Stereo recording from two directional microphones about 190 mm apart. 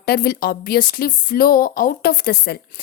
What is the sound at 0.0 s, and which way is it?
Speech, 55° left (ahead or behind).